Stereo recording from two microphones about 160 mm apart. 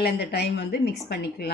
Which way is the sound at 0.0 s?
90° left.